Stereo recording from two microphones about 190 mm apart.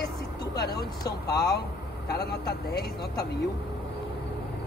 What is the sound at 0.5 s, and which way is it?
Speech, 55° left (ahead or behind).